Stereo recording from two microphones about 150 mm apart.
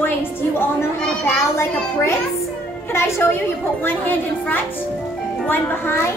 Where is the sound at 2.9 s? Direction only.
15° left (ahead or behind).